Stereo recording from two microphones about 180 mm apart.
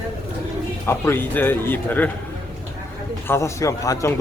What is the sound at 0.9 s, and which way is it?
Speech, 15° left (ahead or behind).